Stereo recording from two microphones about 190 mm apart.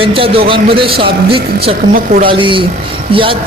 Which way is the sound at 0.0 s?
30° right (ahead or behind).